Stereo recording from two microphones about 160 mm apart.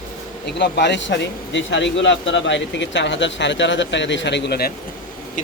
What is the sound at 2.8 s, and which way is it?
A man's voice, 90° left.